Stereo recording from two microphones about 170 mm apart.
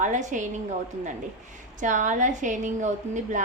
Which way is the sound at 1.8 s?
50° right (ahead or behind).